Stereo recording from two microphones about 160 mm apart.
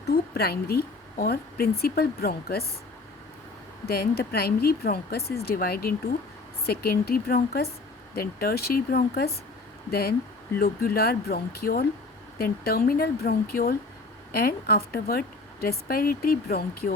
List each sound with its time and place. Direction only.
0.3 s a woman's voice: 80° left
3.8 s a woman's voice: 75° left (ahead or behind)